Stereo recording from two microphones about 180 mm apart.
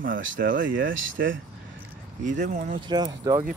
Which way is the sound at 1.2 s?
65° right (ahead or behind).